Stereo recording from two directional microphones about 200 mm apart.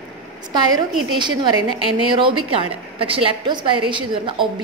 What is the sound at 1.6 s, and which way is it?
A woman's voice, 25° right (ahead or behind).